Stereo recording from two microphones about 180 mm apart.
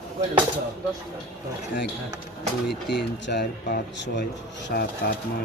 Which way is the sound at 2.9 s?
70° left (ahead or behind).